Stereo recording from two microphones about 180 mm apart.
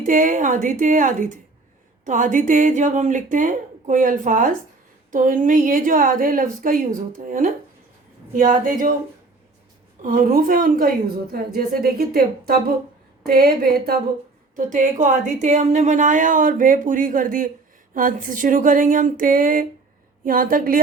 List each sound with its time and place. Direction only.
0.0 s a woman's voice: 45° right (ahead or behind)
10.0 s a woman's voice: 50° right (ahead or behind)
14.5 s a woman's voice: 45° right (ahead or behind)